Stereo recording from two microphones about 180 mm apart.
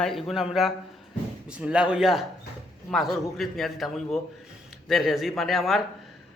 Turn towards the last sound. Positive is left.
turn(degrees=0)  # may be behind; listen again after turning